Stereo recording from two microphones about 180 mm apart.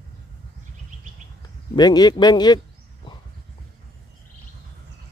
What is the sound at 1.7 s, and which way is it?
Speech, 20° left (ahead or behind).